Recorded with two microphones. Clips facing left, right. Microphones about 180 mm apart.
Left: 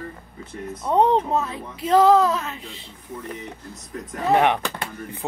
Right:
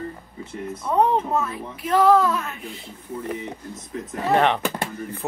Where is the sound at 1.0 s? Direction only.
20° left (ahead or behind).